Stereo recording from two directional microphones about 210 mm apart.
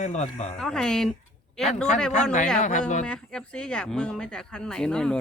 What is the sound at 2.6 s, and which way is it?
Speech, 35° left (ahead or behind).